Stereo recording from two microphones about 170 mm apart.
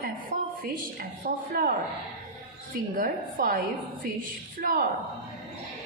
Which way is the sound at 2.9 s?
55° right (ahead or behind).